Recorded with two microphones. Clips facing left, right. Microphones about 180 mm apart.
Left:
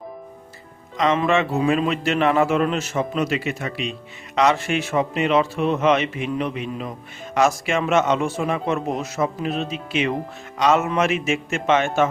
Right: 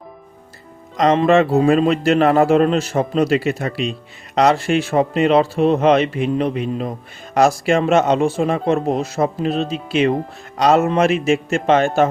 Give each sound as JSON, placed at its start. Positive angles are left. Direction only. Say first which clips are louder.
{"t": 0.9, "sound": "speech", "louder": "right 6 dB", "side_deg": -35}